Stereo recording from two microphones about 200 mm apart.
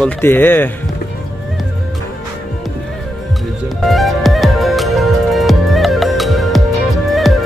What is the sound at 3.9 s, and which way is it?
Music, centre (ahead or behind).